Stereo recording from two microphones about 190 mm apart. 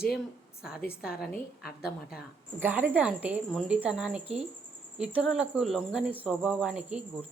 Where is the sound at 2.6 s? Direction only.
10° right (ahead or behind).